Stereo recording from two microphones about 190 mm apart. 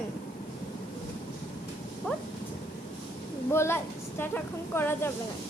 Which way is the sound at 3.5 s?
15° left (ahead or behind).